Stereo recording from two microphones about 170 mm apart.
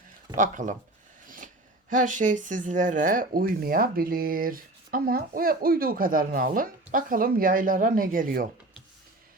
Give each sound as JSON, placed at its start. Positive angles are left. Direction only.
{"t": 0.3, "sound": "speech", "side_deg": -50}
{"t": 1.9, "sound": "speech", "side_deg": -50}